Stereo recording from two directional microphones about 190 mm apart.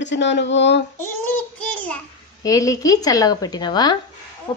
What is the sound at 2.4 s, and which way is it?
A woman's voice, 15° left (ahead or behind).